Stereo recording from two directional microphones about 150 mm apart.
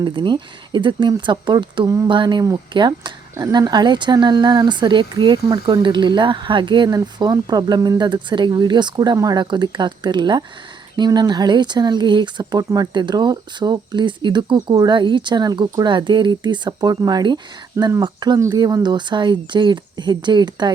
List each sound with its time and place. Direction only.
0.0 s speech: 30° right (ahead or behind)